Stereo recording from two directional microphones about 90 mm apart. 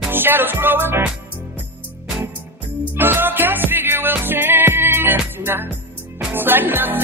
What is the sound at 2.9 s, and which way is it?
Music, 25° right (ahead or behind).